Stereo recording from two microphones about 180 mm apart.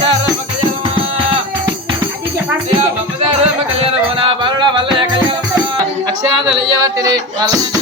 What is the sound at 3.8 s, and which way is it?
Music, 30° right (ahead or behind).